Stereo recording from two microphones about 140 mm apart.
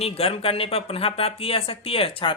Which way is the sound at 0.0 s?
45° left (ahead or behind).